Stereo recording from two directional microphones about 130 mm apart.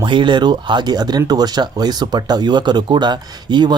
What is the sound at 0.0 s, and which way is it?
Speech, 35° right (ahead or behind).